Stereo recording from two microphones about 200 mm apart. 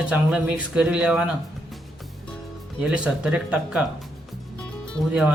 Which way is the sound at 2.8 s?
5° right (ahead or behind).